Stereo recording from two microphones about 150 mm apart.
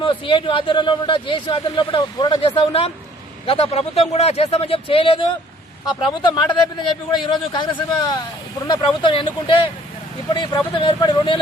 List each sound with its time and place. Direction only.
0.0 s speech: 35° left (ahead or behind)